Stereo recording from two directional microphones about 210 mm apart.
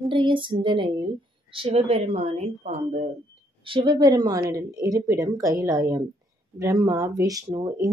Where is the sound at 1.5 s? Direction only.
25° right (ahead or behind).